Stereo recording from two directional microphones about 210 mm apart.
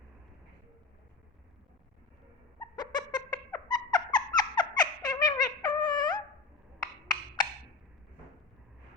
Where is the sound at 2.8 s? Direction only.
20° left (ahead or behind).